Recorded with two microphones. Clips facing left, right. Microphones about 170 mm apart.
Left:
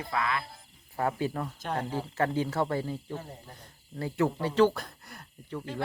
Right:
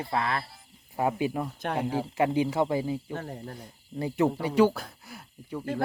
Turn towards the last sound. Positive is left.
turn(degrees=-5)  # may be behind; listen again after turning